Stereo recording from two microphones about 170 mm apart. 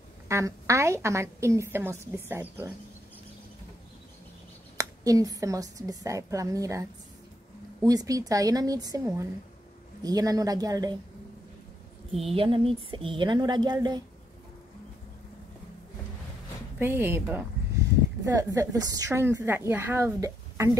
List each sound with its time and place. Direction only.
0.3 s speech: 15° right (ahead or behind)
4.7 s a woman's voice: 20° right (ahead or behind)
12.1 s speech: centre (ahead or behind)
12.4 s a woman's voice: 30° right (ahead or behind)
16.7 s speech: 10° right (ahead or behind)